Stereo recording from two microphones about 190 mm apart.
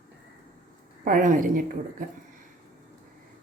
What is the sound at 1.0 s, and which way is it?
A woman's voice, 45° right (ahead or behind).